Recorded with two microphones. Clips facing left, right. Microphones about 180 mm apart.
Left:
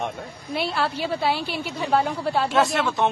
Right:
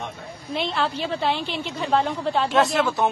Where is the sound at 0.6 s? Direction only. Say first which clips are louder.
Even; 10° left (ahead or behind).